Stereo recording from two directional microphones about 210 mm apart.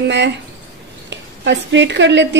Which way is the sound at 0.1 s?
55° right (ahead or behind).